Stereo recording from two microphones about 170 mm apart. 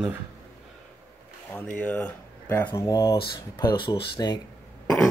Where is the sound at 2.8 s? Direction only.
20° left (ahead or behind).